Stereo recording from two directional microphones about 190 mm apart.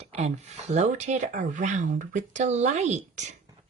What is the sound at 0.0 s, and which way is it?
Speech, 35° right (ahead or behind).